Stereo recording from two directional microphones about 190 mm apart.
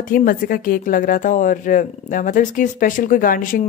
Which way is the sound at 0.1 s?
50° left (ahead or behind).